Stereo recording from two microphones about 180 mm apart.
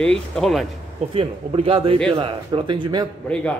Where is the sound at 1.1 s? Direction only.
30° right (ahead or behind).